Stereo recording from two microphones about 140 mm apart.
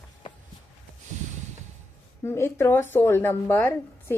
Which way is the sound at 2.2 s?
20° left (ahead or behind).